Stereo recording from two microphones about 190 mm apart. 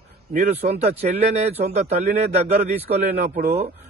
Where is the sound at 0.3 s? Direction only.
35° right (ahead or behind).